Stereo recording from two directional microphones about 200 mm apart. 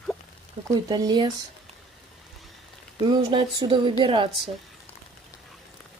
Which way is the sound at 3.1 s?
25° right (ahead or behind).